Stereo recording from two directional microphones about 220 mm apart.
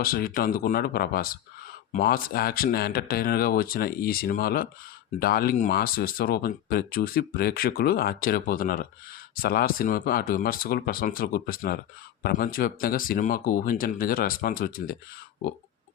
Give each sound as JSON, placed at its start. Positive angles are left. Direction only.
{"t": 0.0, "sound": "speech", "side_deg": 40}